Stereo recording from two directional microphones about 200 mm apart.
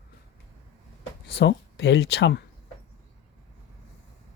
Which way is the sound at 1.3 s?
60° left (ahead or behind).